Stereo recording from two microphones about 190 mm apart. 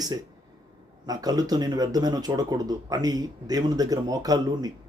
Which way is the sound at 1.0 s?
20° right (ahead or behind).